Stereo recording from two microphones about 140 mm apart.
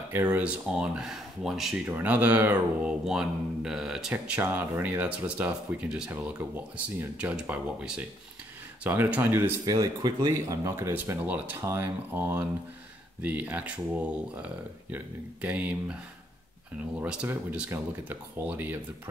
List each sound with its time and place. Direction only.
0.1 s speech: 10° right (ahead or behind)
9.7 s speech: 25° right (ahead or behind)